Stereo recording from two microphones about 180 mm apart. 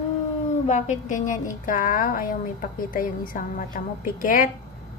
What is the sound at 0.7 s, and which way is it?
A woman's voice, 40° left (ahead or behind).